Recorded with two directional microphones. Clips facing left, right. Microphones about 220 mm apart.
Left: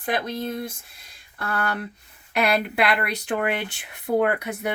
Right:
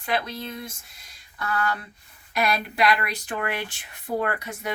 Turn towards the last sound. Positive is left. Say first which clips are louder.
# left 5 dB
turn(degrees=60)  # may be behind; listen again after turning